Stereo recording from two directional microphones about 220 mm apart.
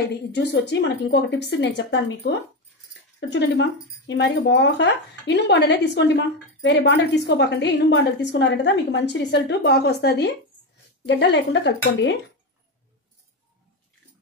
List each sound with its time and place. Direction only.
0.3 s a woman's voice: 50° left (ahead or behind)